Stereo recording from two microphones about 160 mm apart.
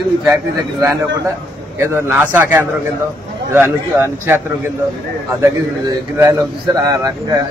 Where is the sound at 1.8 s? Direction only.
15° right (ahead or behind).